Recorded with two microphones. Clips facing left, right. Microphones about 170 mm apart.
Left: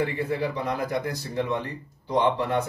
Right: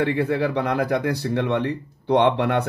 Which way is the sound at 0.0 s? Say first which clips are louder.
Right 5 dB; 65° right (ahead or behind).